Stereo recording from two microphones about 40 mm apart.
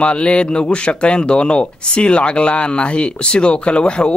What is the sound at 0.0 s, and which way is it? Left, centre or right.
Speech, left.